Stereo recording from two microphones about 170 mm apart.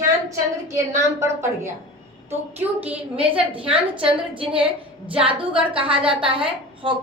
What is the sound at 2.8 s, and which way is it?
A woman's voice, 30° right (ahead or behind).